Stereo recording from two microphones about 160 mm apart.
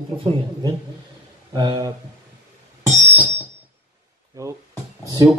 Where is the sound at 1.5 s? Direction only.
25° right (ahead or behind).